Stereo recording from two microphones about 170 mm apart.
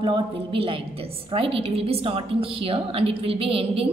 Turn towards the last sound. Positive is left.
turn(degrees=-35)  # may be behind; listen again after turning